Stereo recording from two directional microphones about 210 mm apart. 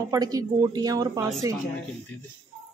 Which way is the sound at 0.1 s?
15° right (ahead or behind).